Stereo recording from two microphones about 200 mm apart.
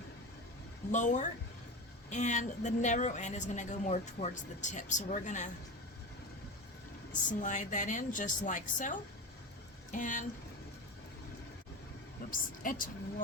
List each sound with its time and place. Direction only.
0.9 s a woman's voice: 40° left (ahead or behind)
7.1 s a woman's voice: 40° left (ahead or behind)
12.3 s a woman's voice: 45° left (ahead or behind)